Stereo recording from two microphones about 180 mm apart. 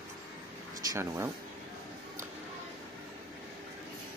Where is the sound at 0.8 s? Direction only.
15° right (ahead or behind).